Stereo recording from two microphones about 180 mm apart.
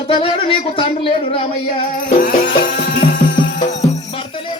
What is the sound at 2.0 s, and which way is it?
Music, 50° left (ahead or behind).